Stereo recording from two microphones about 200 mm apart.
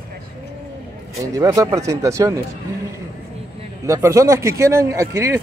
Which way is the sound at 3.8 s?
15° right (ahead or behind).